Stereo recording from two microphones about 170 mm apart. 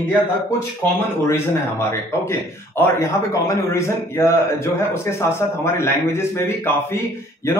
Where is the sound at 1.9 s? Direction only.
15° left (ahead or behind).